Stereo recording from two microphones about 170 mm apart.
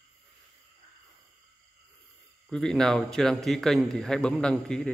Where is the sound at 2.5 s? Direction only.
5° left (ahead or behind).